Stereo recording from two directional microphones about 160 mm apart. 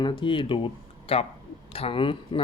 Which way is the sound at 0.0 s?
30° left (ahead or behind).